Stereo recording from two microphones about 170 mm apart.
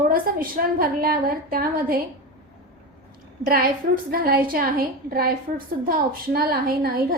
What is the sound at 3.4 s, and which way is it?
A woman's voice, 60° right (ahead or behind).